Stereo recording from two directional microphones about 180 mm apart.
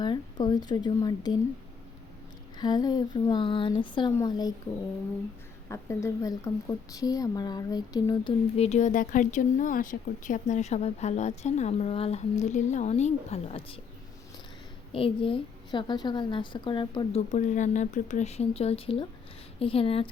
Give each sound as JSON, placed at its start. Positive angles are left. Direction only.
{"t": 0.0, "sound": "a woman's voice", "side_deg": 25}
{"t": 2.6, "sound": "a woman's voice", "side_deg": 25}
{"t": 5.6, "sound": "a woman's voice", "side_deg": 15}
{"t": 8.5, "sound": "a woman's voice", "side_deg": 35}
{"t": 14.9, "sound": "a woman's voice", "side_deg": 30}
{"t": 17.2, "sound": "a woman's voice", "side_deg": 40}